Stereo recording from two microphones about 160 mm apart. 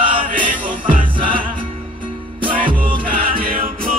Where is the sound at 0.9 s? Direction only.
60° right (ahead or behind).